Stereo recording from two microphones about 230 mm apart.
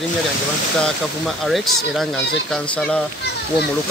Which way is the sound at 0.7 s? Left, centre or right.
Centre.